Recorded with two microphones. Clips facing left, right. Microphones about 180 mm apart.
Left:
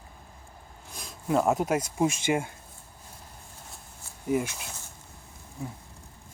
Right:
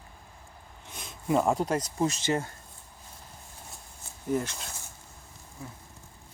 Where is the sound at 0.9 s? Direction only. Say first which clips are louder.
Even; centre (ahead or behind).